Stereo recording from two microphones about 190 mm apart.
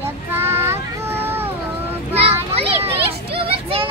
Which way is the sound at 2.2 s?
30° right (ahead or behind).